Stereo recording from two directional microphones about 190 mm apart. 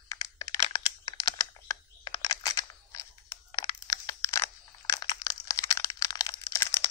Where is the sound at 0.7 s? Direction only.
20° left (ahead or behind).